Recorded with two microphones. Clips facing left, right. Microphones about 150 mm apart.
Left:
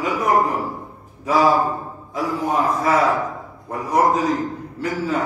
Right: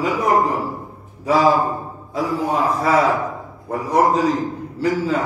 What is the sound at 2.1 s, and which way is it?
A man's voice, 30° right (ahead or behind).